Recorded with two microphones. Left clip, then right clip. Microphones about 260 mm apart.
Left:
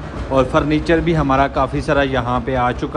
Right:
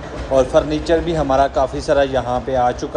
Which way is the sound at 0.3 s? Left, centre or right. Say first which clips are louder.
Right 1 dB; left.